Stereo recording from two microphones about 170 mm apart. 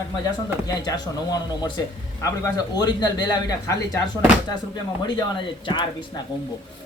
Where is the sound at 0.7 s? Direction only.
20° left (ahead or behind).